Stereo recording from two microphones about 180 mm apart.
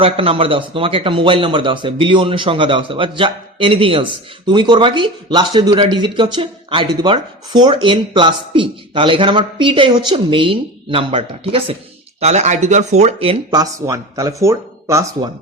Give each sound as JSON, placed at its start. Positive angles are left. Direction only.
{"t": 0.0, "sound": "a man's voice", "side_deg": -30}